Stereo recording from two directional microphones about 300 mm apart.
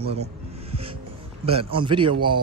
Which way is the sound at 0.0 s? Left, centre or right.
Centre.